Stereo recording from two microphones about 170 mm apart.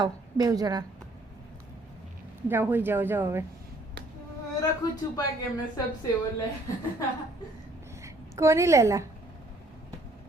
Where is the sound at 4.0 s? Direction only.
90° right.